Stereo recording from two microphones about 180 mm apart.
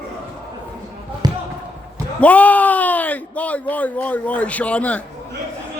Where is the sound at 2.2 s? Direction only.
10° left (ahead or behind).